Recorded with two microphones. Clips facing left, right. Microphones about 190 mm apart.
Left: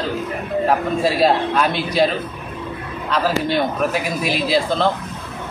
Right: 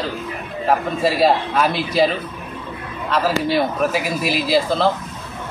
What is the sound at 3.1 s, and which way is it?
Speech, centre (ahead or behind).